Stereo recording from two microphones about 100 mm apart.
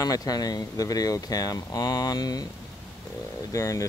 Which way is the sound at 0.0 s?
40° left (ahead or behind).